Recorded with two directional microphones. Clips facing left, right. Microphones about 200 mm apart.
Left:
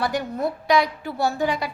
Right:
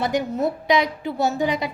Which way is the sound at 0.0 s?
20° right (ahead or behind).